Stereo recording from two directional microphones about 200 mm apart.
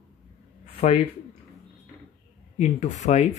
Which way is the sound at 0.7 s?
30° left (ahead or behind).